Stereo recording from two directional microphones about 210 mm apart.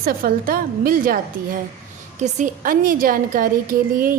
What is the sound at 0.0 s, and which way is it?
A woman's voice, 40° right (ahead or behind).